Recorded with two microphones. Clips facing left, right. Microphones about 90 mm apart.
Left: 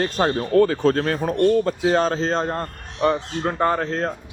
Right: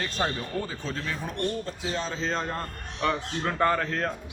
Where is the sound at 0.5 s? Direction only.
65° left (ahead or behind).